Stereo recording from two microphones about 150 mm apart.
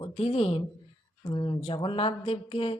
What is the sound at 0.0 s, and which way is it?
Speech, 40° left (ahead or behind).